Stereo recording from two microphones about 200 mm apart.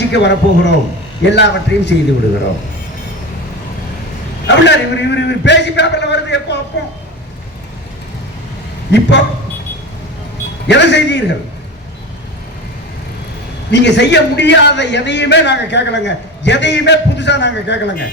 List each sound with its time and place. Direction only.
0.1 s a man's voice: 60° left (ahead or behind)
4.4 s a man's voice: 60° left (ahead or behind)
8.9 s a man's voice: 60° left (ahead or behind)
10.7 s a man's voice: 60° left (ahead or behind)
13.7 s a man's voice: 60° left (ahead or behind)